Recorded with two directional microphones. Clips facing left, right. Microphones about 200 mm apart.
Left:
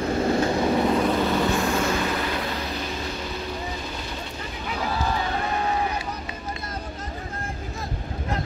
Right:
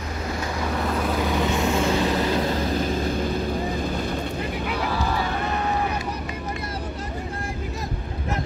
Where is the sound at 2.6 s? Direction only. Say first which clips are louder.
Right 7 dB; 45° right (ahead or behind).